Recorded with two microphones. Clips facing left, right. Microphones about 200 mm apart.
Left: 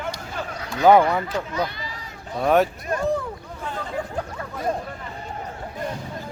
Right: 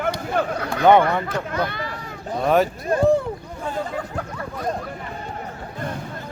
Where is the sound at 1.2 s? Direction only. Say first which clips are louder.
Right 1 dB; 60° right (ahead or behind).